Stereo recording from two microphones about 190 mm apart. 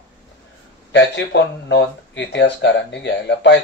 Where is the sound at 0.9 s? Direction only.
70° left (ahead or behind).